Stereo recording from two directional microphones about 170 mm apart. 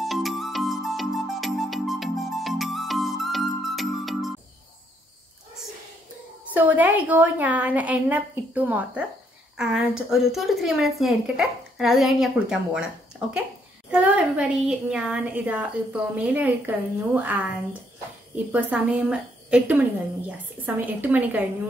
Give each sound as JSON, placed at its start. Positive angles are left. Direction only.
{"t": 0.0, "sound": "music", "side_deg": 0}
{"t": 6.5, "sound": "a woman's voice", "side_deg": -10}